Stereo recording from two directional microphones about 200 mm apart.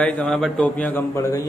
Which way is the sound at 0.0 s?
5° left (ahead or behind).